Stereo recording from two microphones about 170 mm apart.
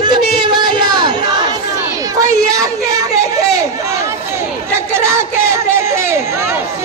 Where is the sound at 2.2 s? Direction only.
20° right (ahead or behind).